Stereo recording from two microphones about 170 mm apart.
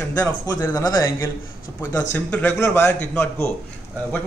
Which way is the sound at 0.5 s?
15° left (ahead or behind).